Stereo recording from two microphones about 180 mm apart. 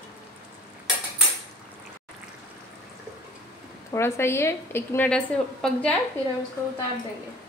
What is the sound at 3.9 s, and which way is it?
A woman's voice, 15° left (ahead or behind).